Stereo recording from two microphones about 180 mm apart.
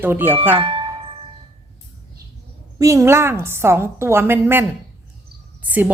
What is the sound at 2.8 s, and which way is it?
A woman's voice, 15° right (ahead or behind).